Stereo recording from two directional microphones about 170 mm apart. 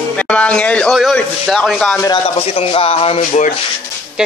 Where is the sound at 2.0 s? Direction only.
30° left (ahead or behind).